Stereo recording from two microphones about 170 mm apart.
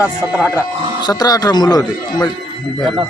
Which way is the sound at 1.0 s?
25° left (ahead or behind).